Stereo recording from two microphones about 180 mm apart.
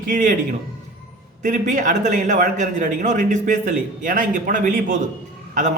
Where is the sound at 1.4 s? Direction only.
45° right (ahead or behind).